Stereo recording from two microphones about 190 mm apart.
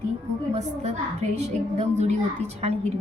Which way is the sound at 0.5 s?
35° right (ahead or behind).